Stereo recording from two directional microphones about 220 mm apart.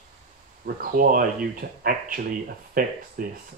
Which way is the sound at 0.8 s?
40° right (ahead or behind).